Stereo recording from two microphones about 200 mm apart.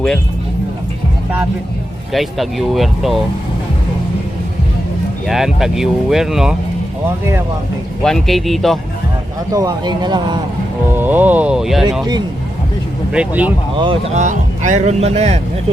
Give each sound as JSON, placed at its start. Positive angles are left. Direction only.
{"t": 2.1, "sound": "speech", "side_deg": 0}
{"t": 5.3, "sound": "speech", "side_deg": 0}
{"t": 8.0, "sound": "speech", "side_deg": 0}
{"t": 9.5, "sound": "speech", "side_deg": -15}
{"t": 10.9, "sound": "speech", "side_deg": -10}
{"t": 13.1, "sound": "speech", "side_deg": -5}
{"t": 13.7, "sound": "speech", "side_deg": -25}